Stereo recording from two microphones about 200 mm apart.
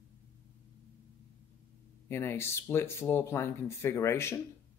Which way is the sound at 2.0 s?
10° left (ahead or behind).